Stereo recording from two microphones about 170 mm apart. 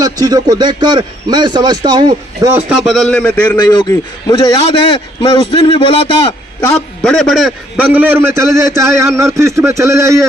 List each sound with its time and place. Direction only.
0.0 s a man's voice: 20° right (ahead or behind)
2.5 s a man's voice: 5° right (ahead or behind)
3.4 s a man's voice: 15° left (ahead or behind); by 6.1 s 30° left (ahead or behind)
7.0 s a man's voice: 5° left (ahead or behind); by 10.2 s 15° right (ahead or behind)